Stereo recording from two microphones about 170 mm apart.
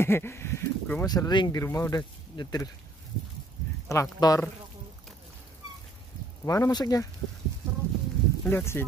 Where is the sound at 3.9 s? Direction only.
20° left (ahead or behind).